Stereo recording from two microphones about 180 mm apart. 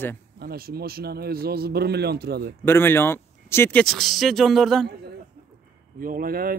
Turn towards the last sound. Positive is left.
turn(degrees=-55)  # may be behind; listen again after turning